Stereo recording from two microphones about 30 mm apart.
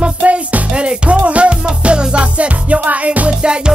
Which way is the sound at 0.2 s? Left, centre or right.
Right.